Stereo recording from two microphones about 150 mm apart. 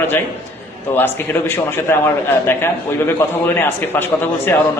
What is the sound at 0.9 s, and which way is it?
A man's voice, 15° left (ahead or behind).